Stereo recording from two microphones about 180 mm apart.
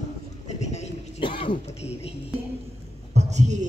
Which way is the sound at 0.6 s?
40° left (ahead or behind).